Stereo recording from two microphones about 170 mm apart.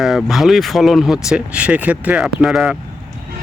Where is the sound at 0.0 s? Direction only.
Centre (ahead or behind).